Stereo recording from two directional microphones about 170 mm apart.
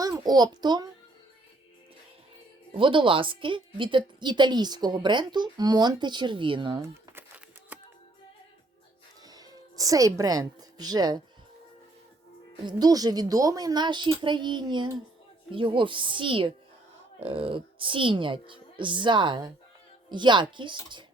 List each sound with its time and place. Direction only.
0.0 s a child's voice: 20° right (ahead or behind)
2.7 s a woman's voice: 30° right (ahead or behind)
6.8 s a sound: 10° right (ahead or behind)
9.2 s speech: 20° right (ahead or behind)
12.6 s a woman's voice: 20° right (ahead or behind)